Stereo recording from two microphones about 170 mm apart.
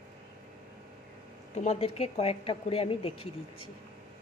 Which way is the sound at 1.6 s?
35° left (ahead or behind).